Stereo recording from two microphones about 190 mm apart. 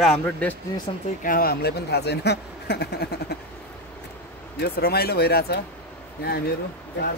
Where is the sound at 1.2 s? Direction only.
50° left (ahead or behind).